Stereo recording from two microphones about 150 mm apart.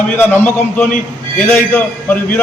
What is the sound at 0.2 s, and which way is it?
A man's voice, 15° left (ahead or behind).